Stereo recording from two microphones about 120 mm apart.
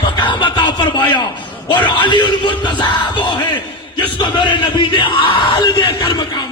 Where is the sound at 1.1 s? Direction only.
40° left (ahead or behind).